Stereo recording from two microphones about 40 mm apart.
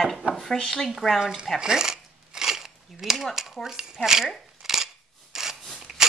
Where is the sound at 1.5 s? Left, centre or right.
Centre.